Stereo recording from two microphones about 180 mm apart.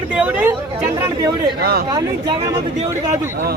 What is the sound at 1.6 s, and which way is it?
Speech, 60° right (ahead or behind).